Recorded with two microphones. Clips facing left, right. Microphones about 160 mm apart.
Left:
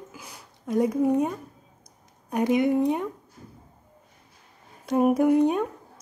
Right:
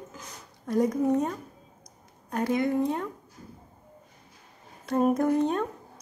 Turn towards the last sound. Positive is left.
turn(degrees=10)  # may be behind; listen again after turning